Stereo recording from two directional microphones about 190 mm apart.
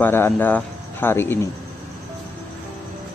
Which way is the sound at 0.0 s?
10° left (ahead or behind).